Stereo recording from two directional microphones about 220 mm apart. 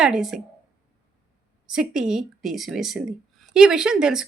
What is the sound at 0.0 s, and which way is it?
Speech, centre (ahead or behind).